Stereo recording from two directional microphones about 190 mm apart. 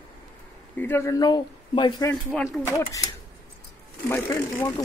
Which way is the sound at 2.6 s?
15° left (ahead or behind).